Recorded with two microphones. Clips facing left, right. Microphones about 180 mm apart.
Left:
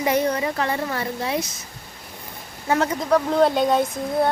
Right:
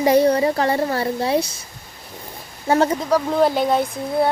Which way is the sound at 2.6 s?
30° right (ahead or behind).